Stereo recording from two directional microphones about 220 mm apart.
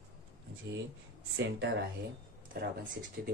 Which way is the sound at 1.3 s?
55° right (ahead or behind).